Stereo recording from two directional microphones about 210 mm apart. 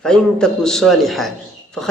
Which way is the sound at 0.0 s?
5° left (ahead or behind).